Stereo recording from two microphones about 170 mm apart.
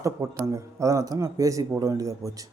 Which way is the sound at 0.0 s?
15° right (ahead or behind).